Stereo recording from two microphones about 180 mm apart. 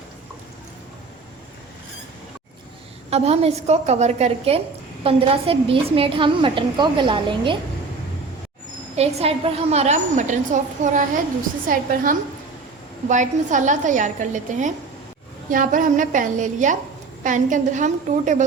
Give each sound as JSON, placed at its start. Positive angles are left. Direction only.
{"t": 3.1, "sound": "a woman's voice", "side_deg": -35}
{"t": 9.0, "sound": "a woman's voice", "side_deg": -35}